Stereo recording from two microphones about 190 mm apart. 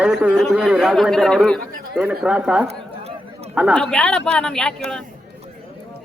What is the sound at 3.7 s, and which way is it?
A woman's voice, 5° left (ahead or behind).